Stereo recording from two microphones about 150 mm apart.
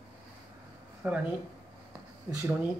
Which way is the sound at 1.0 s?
10° right (ahead or behind).